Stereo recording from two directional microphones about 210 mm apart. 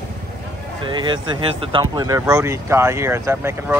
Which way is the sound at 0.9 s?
20° right (ahead or behind).